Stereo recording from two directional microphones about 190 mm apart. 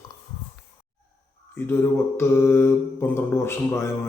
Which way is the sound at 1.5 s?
10° left (ahead or behind).